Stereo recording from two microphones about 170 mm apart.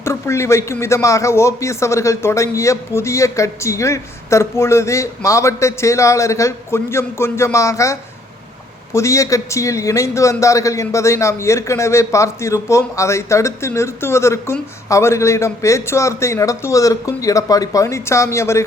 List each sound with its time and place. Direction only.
0.0 s a man's voice: 15° left (ahead or behind)